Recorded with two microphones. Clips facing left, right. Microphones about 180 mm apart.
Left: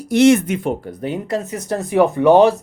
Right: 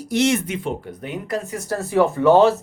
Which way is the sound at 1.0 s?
30° left (ahead or behind).